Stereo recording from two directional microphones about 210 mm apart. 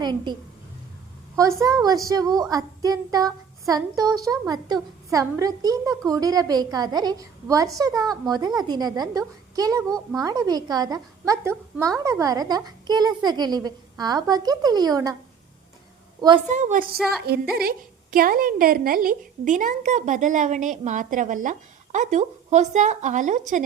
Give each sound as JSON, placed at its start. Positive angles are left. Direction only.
{"t": 0.0, "sound": "a woman's voice", "side_deg": -20}
{"t": 1.4, "sound": "a woman's voice", "side_deg": -15}
{"t": 16.5, "sound": "a woman's voice", "side_deg": -35}
{"t": 17.2, "sound": "a woman's voice", "side_deg": -50}